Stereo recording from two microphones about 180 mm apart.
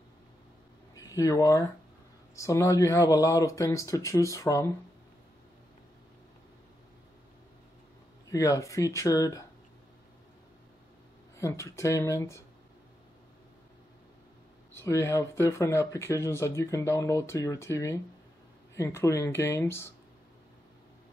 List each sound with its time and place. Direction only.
0.9 s speech: 20° left (ahead or behind)
8.3 s speech: 15° left (ahead or behind)
11.3 s speech: 15° left (ahead or behind)
14.8 s speech: 15° left (ahead or behind)